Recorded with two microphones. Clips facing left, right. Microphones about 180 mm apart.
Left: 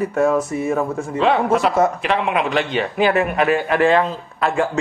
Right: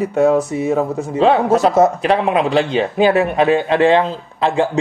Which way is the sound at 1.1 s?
35° right (ahead or behind).